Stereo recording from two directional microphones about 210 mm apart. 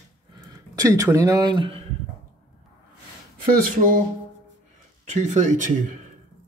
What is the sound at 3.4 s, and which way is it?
Speech, 45° right (ahead or behind).